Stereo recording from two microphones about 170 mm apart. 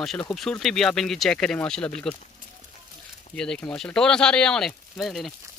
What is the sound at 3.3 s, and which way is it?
Speech, 5° left (ahead or behind).